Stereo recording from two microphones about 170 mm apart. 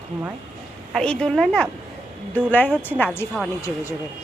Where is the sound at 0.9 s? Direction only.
5° left (ahead or behind).